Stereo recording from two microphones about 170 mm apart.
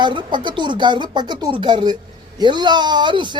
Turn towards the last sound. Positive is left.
turn(degrees=-25)  # may be behind; listen again after turning